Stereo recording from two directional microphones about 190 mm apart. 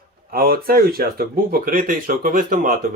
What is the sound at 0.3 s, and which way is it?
Speech, 50° right (ahead or behind).